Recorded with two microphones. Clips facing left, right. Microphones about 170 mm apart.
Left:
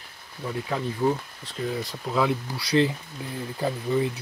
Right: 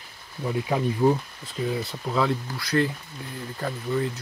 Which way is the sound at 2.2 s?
10° left (ahead or behind).